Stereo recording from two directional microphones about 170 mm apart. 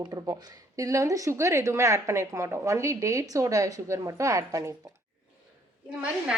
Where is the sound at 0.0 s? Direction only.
20° right (ahead or behind).